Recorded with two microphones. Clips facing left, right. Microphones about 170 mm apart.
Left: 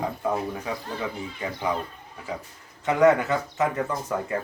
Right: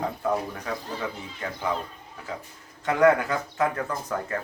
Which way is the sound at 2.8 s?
5° left (ahead or behind).